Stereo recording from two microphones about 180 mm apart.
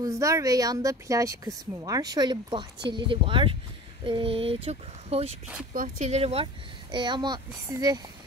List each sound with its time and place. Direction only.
0.0 s speech: 15° right (ahead or behind)
4.0 s a sound: 30° right (ahead or behind)
4.6 s speech: 35° right (ahead or behind)
5.7 s speech: 45° right (ahead or behind); by 8.0 s 20° right (ahead or behind)